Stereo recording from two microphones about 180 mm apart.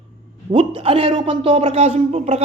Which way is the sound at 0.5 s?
30° right (ahead or behind).